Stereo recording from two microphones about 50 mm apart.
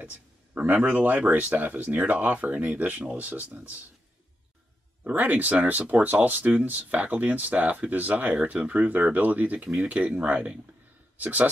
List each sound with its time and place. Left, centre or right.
0.0 s a sound: right
0.8 s speech: right
5.0 s speech: right